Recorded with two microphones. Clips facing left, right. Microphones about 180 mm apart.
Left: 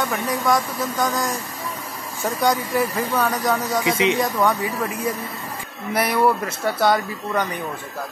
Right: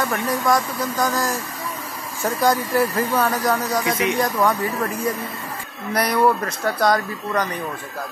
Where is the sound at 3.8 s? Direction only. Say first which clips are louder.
Left 2 dB; 25° left (ahead or behind).